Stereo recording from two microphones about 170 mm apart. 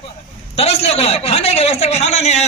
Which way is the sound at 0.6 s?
35° left (ahead or behind).